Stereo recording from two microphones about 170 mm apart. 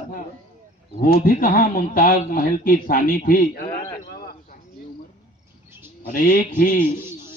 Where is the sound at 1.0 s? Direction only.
55° left (ahead or behind).